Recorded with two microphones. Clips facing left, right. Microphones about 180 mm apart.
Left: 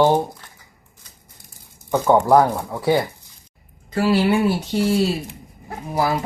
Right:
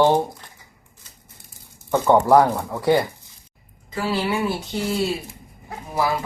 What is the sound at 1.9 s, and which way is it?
Speech, centre (ahead or behind).